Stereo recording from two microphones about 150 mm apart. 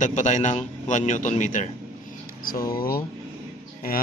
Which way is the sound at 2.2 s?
75° left (ahead or behind).